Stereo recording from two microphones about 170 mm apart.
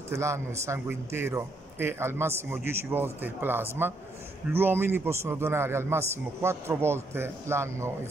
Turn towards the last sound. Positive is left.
turn(degrees=-15)  # may be behind; listen again after turning